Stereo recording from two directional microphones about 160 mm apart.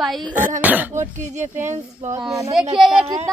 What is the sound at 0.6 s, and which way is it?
Speech, 10° right (ahead or behind).